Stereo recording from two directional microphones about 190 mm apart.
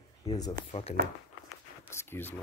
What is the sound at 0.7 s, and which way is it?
Speech, 30° left (ahead or behind).